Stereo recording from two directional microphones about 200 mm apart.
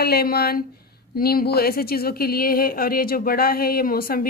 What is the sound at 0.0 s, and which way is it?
Speech, 50° left (ahead or behind).